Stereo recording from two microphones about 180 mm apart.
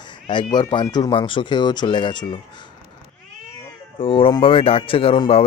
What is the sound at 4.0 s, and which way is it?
Speech, 30° left (ahead or behind).